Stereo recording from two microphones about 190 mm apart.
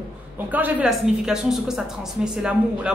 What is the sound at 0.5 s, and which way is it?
A woman's voice, 10° right (ahead or behind).